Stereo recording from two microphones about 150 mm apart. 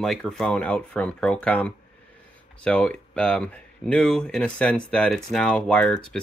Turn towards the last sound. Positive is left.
turn(degrees=5)  # may be behind; listen again after turning